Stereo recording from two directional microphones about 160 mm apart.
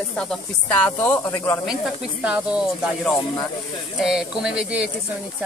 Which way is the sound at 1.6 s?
Centre (ahead or behind).